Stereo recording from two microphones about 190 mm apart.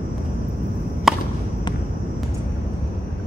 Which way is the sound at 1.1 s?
Centre (ahead or behind).